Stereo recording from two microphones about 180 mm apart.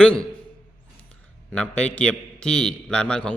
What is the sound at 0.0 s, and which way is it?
Speech, 5° left (ahead or behind).